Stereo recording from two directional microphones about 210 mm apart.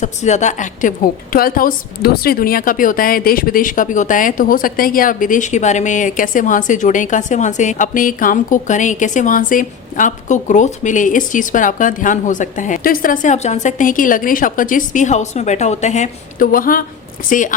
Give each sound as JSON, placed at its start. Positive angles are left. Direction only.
{"t": 0.0, "sound": "a woman's voice", "side_deg": 35}